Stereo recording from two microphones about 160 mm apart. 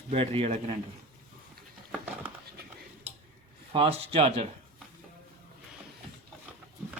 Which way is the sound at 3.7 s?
35° right (ahead or behind).